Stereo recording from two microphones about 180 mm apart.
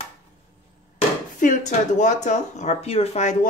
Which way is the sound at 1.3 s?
45° left (ahead or behind).